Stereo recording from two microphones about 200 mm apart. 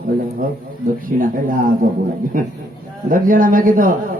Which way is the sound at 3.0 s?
40° right (ahead or behind).